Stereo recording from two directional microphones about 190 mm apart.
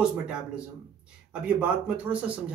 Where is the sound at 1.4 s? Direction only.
5° right (ahead or behind).